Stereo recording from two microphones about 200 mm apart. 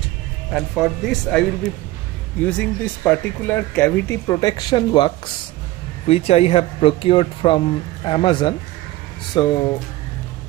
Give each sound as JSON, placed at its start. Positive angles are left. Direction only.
{"t": 0.5, "sound": "speech", "side_deg": 0}
{"t": 2.4, "sound": "speech", "side_deg": 5}